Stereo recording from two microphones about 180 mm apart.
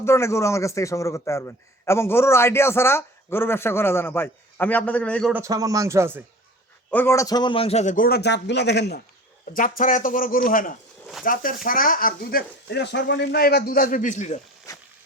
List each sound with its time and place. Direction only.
0.0 s a man's voice: 15° left (ahead or behind)
5.3 s speech: 15° right (ahead or behind)
6.9 s speech: 15° left (ahead or behind); by 9.0 s 70° left (ahead or behind)
9.5 s speech: 50° left (ahead or behind)
14.7 s a sound: 20° left (ahead or behind)